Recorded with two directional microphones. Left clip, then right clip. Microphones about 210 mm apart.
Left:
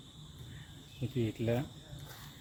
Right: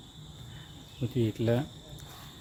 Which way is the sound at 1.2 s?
25° right (ahead or behind).